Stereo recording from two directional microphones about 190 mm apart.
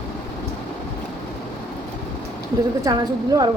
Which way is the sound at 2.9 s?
20° right (ahead or behind).